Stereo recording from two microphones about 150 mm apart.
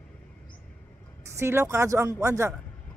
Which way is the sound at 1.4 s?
15° right (ahead or behind).